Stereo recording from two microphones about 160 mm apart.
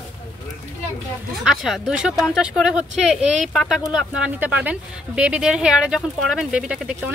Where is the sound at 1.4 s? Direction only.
Centre (ahead or behind).